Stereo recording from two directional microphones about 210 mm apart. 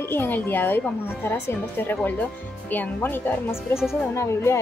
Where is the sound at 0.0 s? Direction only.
10° left (ahead or behind).